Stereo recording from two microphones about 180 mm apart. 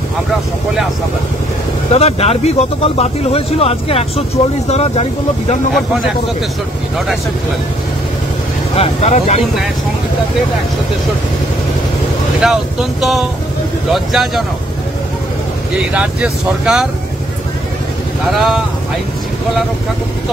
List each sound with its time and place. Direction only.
1.9 s speech: 35° left (ahead or behind)
8.7 s speech: 35° left (ahead or behind)
12.4 s speech: centre (ahead or behind)
15.8 s speech: 5° right (ahead or behind)
18.2 s speech: centre (ahead or behind)